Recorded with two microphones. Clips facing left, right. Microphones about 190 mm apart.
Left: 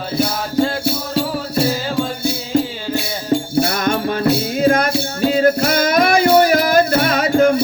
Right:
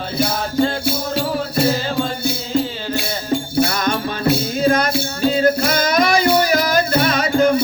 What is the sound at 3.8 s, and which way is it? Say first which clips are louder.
Music: left 3 dB; 55° left (ahead or behind).